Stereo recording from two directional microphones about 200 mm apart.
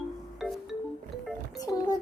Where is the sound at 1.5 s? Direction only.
20° left (ahead or behind).